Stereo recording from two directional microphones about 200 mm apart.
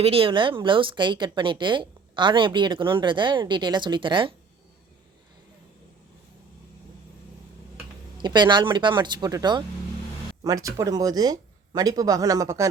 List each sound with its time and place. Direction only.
0.0 s speech: 30° right (ahead or behind)
8.2 s speech: 20° right (ahead or behind)